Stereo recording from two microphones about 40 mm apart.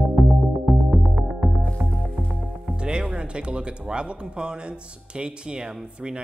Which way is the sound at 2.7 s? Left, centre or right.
Right.